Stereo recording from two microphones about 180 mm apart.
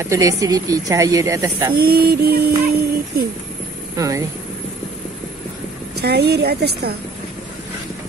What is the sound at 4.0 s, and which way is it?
Speech, 20° right (ahead or behind).